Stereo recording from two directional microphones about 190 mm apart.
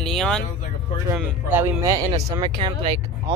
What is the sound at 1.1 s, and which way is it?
Speech, 10° right (ahead or behind).